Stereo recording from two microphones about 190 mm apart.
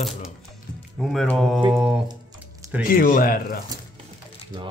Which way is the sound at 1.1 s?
Centre (ahead or behind).